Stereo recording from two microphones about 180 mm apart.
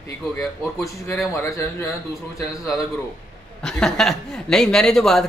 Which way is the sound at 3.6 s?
Centre (ahead or behind).